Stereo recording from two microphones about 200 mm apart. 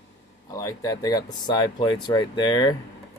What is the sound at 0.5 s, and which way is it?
Speech, 15° left (ahead or behind).